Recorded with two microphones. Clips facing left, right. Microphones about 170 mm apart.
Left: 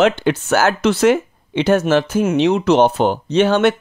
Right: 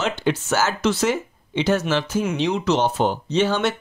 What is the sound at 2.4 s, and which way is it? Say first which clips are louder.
Speech: left 8 dB; 60° left (ahead or behind).